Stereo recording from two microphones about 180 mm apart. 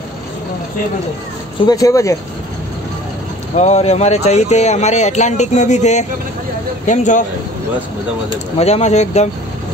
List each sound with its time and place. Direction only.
1.7 s speech: 20° left (ahead or behind)
3.5 s speech: 40° left (ahead or behind)
8.5 s speech: 35° left (ahead or behind)